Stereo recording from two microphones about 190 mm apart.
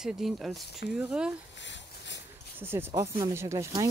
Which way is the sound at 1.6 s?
70° left (ahead or behind).